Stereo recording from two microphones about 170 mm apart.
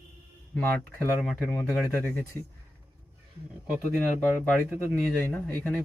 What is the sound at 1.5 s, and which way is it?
Speech, 10° left (ahead or behind).